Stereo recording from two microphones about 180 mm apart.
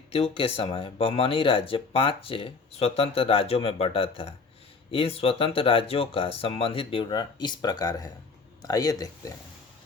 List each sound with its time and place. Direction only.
0.1 s speech: 30° left (ahead or behind)